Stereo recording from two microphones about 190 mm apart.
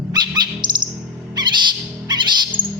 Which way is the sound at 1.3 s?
25° right (ahead or behind).